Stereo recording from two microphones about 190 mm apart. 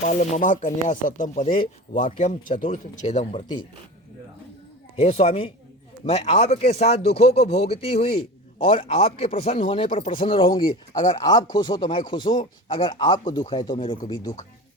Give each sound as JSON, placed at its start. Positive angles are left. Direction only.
{"t": 0.0, "sound": "speech", "side_deg": 40}
{"t": 4.9, "sound": "speech", "side_deg": 30}